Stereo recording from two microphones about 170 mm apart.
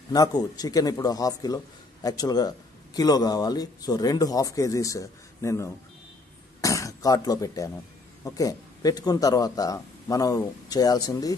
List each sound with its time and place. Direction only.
0.1 s a man's voice: 20° left (ahead or behind)